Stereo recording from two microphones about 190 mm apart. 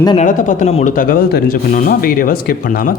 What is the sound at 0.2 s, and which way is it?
Speech, 45° left (ahead or behind).